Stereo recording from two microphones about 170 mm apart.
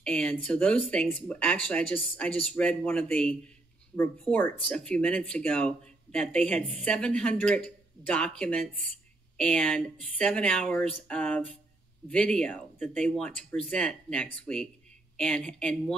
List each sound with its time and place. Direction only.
0.0 s speech: 5° left (ahead or behind)